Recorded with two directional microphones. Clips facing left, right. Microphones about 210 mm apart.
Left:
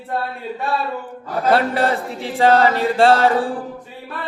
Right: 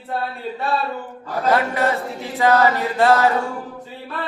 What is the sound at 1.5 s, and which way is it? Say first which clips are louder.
Chant: left 3 dB; 30° left (ahead or behind).